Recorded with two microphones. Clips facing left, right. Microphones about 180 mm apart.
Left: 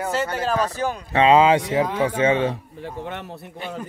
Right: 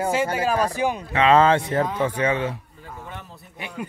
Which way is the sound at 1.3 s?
15° left (ahead or behind).